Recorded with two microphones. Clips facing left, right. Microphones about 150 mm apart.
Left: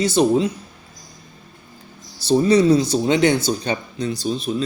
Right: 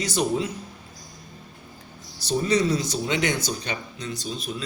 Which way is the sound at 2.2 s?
30° left (ahead or behind).